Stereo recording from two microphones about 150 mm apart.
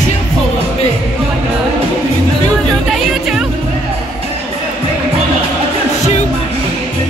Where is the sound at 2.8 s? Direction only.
Centre (ahead or behind).